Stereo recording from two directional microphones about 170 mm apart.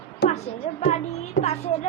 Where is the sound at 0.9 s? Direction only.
40° left (ahead or behind).